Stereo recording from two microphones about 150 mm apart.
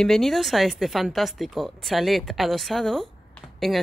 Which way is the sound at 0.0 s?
Centre (ahead or behind).